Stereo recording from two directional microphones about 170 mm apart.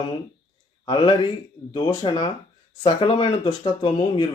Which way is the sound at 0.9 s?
25° left (ahead or behind).